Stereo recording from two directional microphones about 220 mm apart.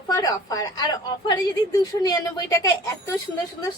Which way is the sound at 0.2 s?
15° left (ahead or behind).